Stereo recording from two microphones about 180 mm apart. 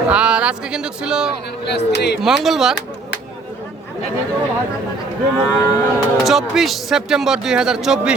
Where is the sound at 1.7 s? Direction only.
70° left (ahead or behind).